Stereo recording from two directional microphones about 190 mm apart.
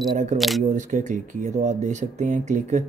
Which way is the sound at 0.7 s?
40° right (ahead or behind).